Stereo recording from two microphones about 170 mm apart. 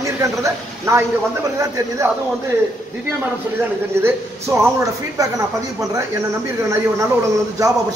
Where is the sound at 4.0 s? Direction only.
15° right (ahead or behind).